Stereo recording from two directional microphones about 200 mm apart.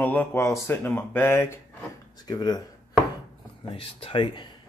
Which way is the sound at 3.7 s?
25° left (ahead or behind).